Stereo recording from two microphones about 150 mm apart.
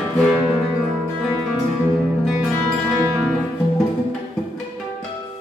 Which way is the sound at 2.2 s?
Centre (ahead or behind).